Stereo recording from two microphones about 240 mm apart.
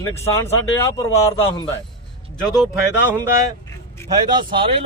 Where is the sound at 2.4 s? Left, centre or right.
Centre.